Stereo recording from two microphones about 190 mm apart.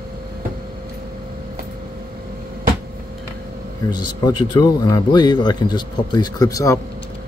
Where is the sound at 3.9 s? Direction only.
20° left (ahead or behind).